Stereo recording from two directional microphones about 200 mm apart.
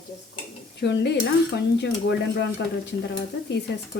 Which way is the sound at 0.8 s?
60° left (ahead or behind).